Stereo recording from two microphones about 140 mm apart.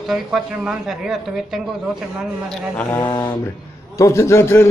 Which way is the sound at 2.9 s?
15° left (ahead or behind).